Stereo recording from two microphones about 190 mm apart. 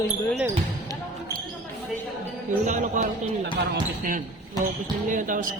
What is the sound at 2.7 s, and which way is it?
A woman's voice, 40° right (ahead or behind).